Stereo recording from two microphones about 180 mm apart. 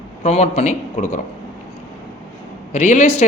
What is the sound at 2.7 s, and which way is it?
Speech, 40° left (ahead or behind).